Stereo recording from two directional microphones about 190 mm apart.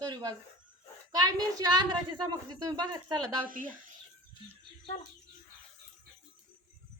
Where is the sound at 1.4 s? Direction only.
20° right (ahead or behind).